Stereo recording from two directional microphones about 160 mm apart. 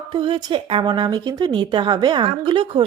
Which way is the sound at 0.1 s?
30° right (ahead or behind).